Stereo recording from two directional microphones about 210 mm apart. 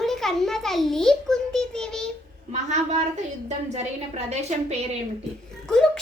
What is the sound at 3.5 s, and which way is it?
A woman's voice, 30° right (ahead or behind).